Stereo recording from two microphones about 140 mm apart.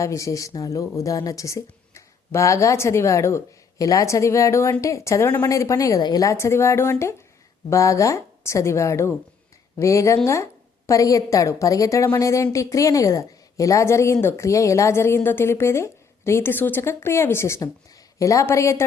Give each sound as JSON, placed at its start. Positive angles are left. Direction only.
{"t": 0.0, "sound": "a woman's voice", "side_deg": 20}